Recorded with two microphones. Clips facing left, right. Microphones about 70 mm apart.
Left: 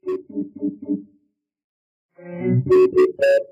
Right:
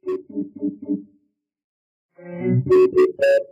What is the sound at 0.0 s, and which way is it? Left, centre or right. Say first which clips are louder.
Music: even; centre.